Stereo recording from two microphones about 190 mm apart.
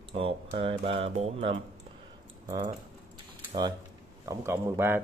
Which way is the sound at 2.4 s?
20° right (ahead or behind).